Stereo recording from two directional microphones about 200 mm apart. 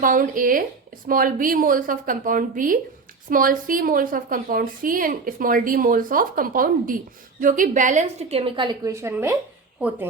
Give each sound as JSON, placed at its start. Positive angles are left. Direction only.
{"t": 0.0, "sound": "a woman's voice", "side_deg": -40}